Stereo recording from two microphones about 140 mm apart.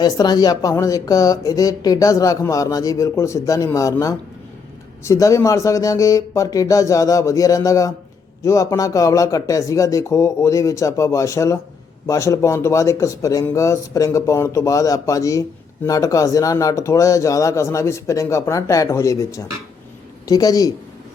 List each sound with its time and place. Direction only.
0.0 s speech: 30° left (ahead or behind)
5.0 s speech: 20° left (ahead or behind)